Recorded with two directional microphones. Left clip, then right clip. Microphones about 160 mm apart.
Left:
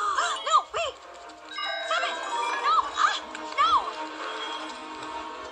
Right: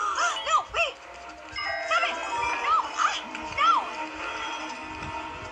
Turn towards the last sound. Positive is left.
turn(degrees=30)  # may be behind; listen again after turning